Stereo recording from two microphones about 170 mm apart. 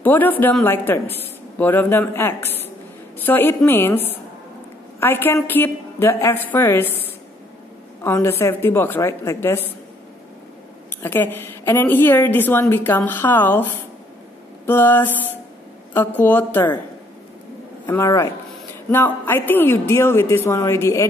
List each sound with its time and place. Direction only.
0.0 s a woman's voice: 10° left (ahead or behind)
11.0 s a woman's voice: 10° left (ahead or behind)
14.7 s a woman's voice: 15° left (ahead or behind)
17.8 s a woman's voice: 15° left (ahead or behind)